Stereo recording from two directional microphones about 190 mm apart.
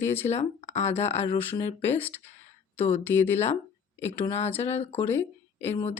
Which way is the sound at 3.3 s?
35° left (ahead or behind).